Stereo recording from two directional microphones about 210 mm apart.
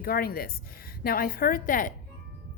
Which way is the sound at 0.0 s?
45° left (ahead or behind).